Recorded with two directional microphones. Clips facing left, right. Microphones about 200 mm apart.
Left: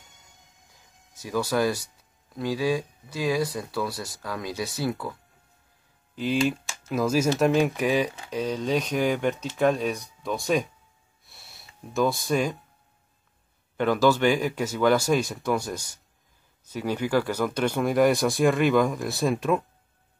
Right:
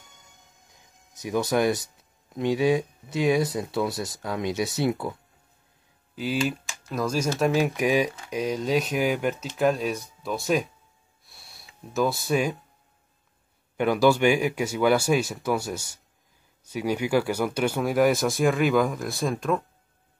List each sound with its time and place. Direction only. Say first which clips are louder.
1.1 s speech: right 2 dB; 20° right (ahead or behind)
6.1 s speech: left 2 dB; 5° right (ahead or behind)
7.7 s speech: right 1 dB; 15° right (ahead or behind)
11.2 s sniff: even; centre (ahead or behind)
13.7 s speech: right 1 dB; 10° right (ahead or behind)
19.3 s speech: even; 10° left (ahead or behind)